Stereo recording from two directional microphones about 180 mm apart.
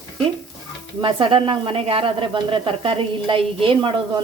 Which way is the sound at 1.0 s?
30° right (ahead or behind).